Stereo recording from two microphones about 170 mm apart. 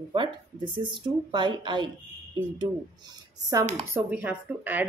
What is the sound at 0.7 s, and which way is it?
Speech, 30° right (ahead or behind).